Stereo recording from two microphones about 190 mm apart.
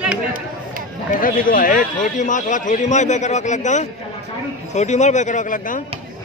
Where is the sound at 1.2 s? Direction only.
45° left (ahead or behind).